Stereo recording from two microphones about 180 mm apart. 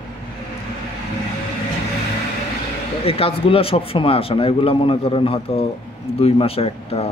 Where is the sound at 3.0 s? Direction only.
30° left (ahead or behind).